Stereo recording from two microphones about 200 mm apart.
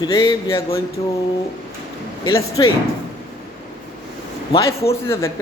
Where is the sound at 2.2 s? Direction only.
15° left (ahead or behind).